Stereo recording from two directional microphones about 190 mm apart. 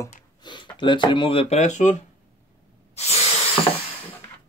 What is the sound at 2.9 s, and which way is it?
Spray, 35° left (ahead or behind).